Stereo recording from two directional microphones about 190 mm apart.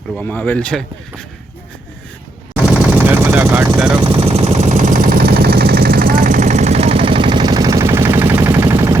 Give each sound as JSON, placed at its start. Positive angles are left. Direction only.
{"t": 0.2, "sound": "speech", "side_deg": 10}
{"t": 2.6, "sound": "machine gun", "side_deg": -5}
{"t": 3.8, "sound": "speech", "side_deg": -5}
{"t": 4.1, "sound": "a sound", "side_deg": -30}